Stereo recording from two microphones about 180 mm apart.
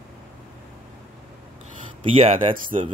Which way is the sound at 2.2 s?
30° right (ahead or behind).